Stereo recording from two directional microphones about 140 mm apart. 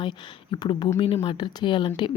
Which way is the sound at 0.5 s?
35° left (ahead or behind).